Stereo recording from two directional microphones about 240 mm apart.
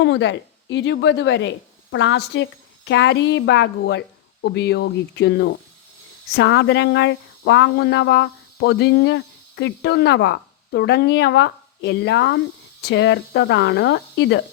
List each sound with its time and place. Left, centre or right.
0.0 s speech: left